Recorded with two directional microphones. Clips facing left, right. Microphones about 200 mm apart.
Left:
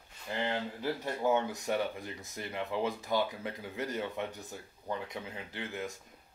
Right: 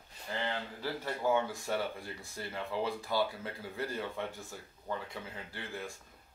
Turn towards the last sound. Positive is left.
turn(degrees=20)  # may be behind; listen again after turning